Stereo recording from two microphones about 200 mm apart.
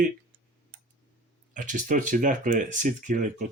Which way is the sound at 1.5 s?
40° right (ahead or behind).